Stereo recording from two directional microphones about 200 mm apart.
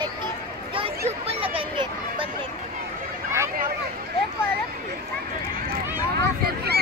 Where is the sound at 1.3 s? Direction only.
25° right (ahead or behind).